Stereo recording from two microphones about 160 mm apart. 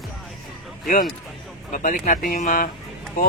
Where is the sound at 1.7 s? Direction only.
60° left (ahead or behind).